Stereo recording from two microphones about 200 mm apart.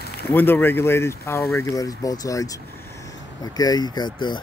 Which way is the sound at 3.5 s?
20° left (ahead or behind).